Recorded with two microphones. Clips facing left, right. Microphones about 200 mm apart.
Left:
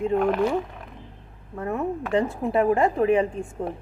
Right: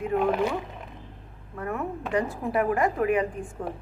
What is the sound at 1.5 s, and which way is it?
A woman's voice, 25° left (ahead or behind).